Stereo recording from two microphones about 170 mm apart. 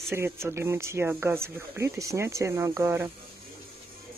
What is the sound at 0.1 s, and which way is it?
Speech, 15° right (ahead or behind).